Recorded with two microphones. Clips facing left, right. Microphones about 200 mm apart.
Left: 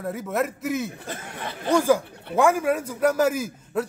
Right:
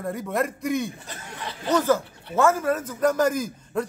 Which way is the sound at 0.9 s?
55° left (ahead or behind).